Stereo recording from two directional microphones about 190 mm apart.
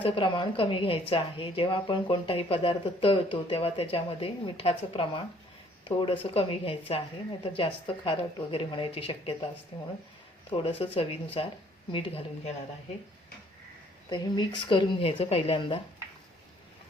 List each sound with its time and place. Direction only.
0.0 s a woman's voice: 30° left (ahead or behind)
14.1 s a woman's voice: 25° left (ahead or behind)